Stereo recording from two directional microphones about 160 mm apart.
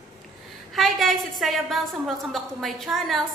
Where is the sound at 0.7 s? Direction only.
Centre (ahead or behind).